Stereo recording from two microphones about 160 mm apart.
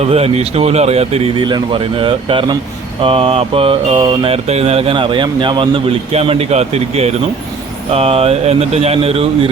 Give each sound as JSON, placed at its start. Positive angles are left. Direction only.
{"t": 0.0, "sound": "mantra", "side_deg": -40}